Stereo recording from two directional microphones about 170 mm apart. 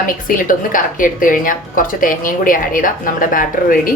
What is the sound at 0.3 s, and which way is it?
A woman's voice, 55° left (ahead or behind).